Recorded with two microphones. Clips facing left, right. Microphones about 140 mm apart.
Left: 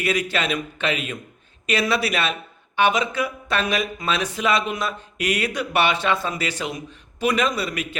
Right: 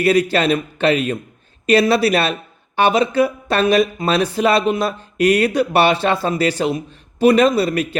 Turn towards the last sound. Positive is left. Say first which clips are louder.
# right 9 dB
turn(degrees=-35)  # may be behind; listen again after turning